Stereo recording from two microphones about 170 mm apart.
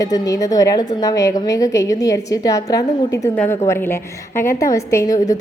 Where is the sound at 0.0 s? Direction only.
20° left (ahead or behind).